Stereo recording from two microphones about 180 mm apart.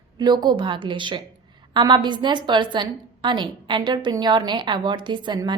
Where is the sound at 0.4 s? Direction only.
25° right (ahead or behind).